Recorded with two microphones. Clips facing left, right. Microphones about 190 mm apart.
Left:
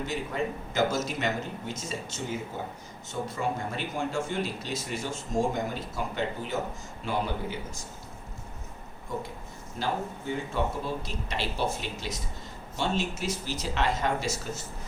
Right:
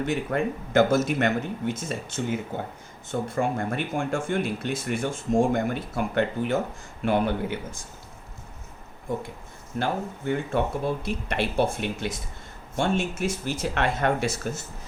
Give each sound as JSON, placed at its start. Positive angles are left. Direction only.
{"t": 0.0, "sound": "speech", "side_deg": -60}
{"t": 9.7, "sound": "speech", "side_deg": -60}